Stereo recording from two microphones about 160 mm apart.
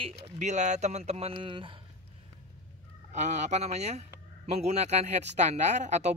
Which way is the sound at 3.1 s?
45° right (ahead or behind).